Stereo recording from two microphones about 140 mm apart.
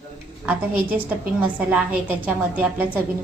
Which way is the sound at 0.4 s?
15° right (ahead or behind).